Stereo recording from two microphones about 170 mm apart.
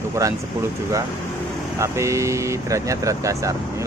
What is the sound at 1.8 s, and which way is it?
Speech, 15° right (ahead or behind).